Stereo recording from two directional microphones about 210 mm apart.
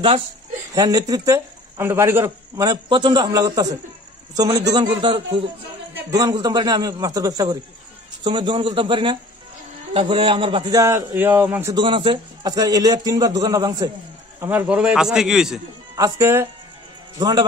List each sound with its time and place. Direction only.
0.7 s a man's voice: 20° right (ahead or behind); by 15.6 s centre (ahead or behind)
16.0 s a man's voice: 15° right (ahead or behind)